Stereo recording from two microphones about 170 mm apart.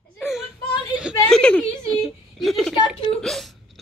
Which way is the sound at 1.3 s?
5° left (ahead or behind).